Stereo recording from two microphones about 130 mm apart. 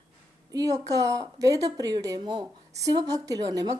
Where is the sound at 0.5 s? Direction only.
25° right (ahead or behind).